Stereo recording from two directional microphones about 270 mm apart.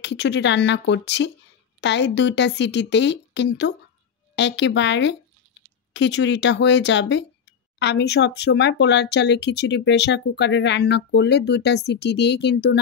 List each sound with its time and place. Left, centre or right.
0.0 s speech: left